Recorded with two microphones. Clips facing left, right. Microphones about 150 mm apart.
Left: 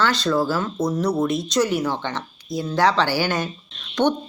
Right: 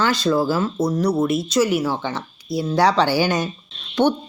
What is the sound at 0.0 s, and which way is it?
Speech, 10° right (ahead or behind).